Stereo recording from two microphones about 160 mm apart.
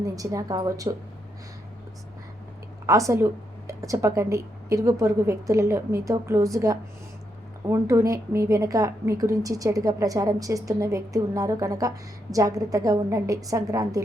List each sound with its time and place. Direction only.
0.0 s a woman's voice: 20° right (ahead or behind)
2.8 s a woman's voice: 20° right (ahead or behind)